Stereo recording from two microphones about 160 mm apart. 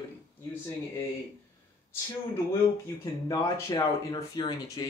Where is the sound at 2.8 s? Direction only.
20° left (ahead or behind).